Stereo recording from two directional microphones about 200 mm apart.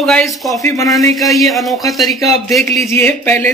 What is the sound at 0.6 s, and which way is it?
Speech, 15° left (ahead or behind).